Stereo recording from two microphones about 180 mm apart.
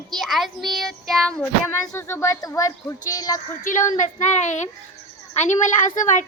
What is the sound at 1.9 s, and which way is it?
A child's voice, 15° left (ahead or behind).